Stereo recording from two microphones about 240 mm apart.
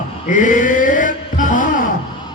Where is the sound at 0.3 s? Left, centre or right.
Left.